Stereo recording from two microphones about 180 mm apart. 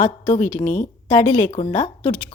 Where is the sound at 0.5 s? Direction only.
10° left (ahead or behind).